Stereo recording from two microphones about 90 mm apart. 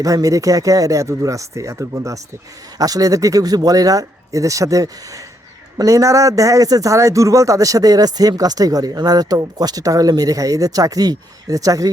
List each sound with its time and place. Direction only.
0.0 s speech: 40° right (ahead or behind)